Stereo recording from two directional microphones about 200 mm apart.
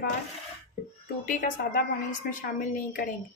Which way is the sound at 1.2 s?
40° left (ahead or behind).